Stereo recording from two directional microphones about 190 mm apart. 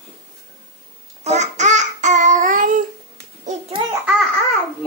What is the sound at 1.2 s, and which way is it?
Babbling, 35° right (ahead or behind).